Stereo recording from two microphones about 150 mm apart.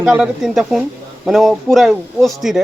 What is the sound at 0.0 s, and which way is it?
Speech, 5° right (ahead or behind).